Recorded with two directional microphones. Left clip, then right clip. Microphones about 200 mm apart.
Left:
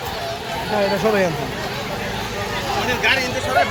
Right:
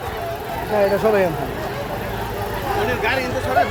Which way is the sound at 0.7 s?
5° left (ahead or behind).